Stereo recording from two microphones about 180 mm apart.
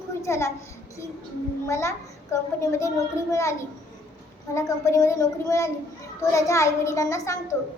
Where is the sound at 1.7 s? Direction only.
15° left (ahead or behind).